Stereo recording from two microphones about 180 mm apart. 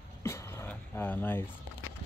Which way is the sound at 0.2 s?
15° left (ahead or behind).